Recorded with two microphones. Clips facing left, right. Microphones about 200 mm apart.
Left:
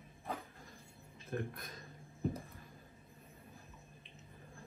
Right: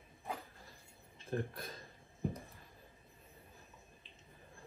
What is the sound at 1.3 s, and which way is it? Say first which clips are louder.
Speech: right 2 dB; 30° right (ahead or behind).